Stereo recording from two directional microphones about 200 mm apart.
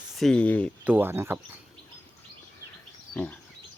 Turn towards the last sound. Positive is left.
turn(degrees=5)  # may be behind; listen again after turning